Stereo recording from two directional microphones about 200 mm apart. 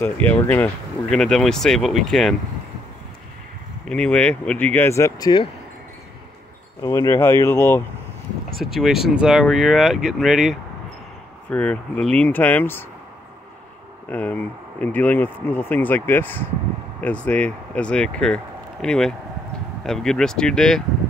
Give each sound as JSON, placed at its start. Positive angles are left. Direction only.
{"t": 0.0, "sound": "speech", "side_deg": 10}
{"t": 3.8, "sound": "speech", "side_deg": 5}
{"t": 6.8, "sound": "speech", "side_deg": 15}
{"t": 8.5, "sound": "speech", "side_deg": 0}
{"t": 14.0, "sound": "speech", "side_deg": 5}